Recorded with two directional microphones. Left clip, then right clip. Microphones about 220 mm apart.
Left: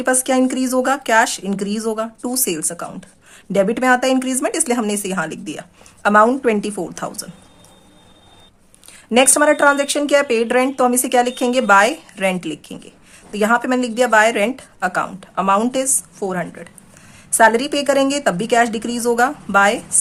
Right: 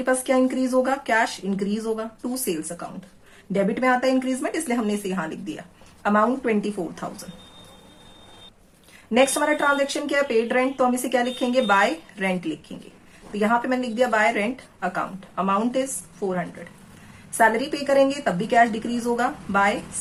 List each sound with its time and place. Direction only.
0.0 s speech: 50° left (ahead or behind)
9.1 s speech: 45° left (ahead or behind)